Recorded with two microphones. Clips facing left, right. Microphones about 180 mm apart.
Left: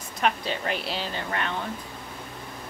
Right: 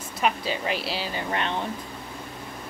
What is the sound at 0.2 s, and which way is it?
A woman's voice, 5° right (ahead or behind).